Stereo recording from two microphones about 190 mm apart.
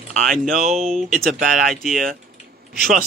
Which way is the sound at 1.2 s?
45° right (ahead or behind).